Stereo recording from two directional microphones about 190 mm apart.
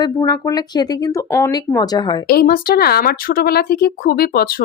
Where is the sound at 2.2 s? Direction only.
55° left (ahead or behind).